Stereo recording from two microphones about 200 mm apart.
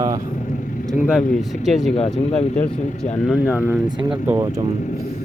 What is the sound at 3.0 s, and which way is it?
Speech, 35° left (ahead or behind).